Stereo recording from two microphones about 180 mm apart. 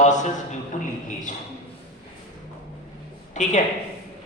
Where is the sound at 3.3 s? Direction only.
45° left (ahead or behind).